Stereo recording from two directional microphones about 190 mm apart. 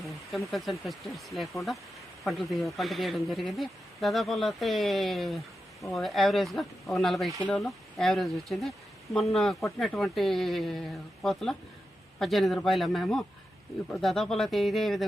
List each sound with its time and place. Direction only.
0.0 s speech: centre (ahead or behind)